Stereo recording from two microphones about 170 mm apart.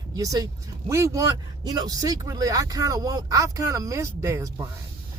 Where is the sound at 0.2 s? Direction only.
20° right (ahead or behind).